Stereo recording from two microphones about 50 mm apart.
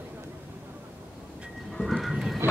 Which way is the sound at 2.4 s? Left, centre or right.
Right.